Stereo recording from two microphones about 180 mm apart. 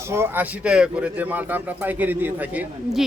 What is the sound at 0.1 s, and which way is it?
A man's voice, 10° right (ahead or behind).